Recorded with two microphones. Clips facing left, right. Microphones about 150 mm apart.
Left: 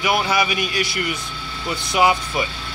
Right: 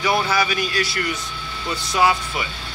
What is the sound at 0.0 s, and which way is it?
Speech, 15° left (ahead or behind).